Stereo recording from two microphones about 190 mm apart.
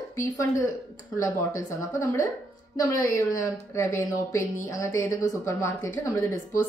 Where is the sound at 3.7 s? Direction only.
15° left (ahead or behind).